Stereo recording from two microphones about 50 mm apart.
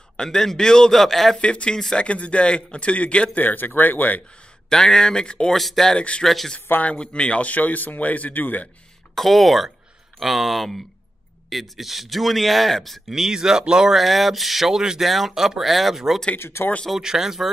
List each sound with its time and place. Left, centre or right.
0.2 s a man's voice: centre
1.4 s a man's voice: left
2.0 s speech: left
3.3 s speech: left
4.6 s a man's voice: centre
5.5 s speech: centre
5.9 s speech: left
6.2 s speech: centre
6.8 s speech: left
9.1 s speech: centre
13.1 s speech: centre
13.9 s speech: centre
16.3 s speech: left
17.0 s speech: centre